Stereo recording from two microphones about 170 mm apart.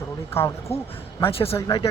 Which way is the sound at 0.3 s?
15° left (ahead or behind).